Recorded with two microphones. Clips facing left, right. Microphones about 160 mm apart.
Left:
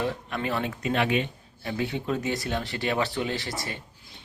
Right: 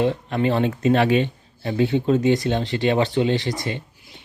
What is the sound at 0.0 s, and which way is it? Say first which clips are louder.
Speech: right 9 dB; 25° right (ahead or behind).